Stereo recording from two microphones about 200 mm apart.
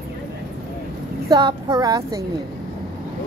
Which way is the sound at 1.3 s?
20° right (ahead or behind).